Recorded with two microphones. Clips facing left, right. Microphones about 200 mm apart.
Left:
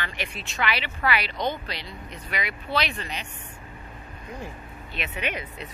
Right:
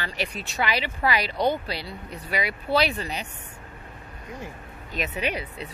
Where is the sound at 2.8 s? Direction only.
35° right (ahead or behind).